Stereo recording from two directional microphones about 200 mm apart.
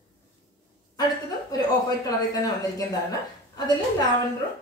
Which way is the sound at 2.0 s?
15° left (ahead or behind).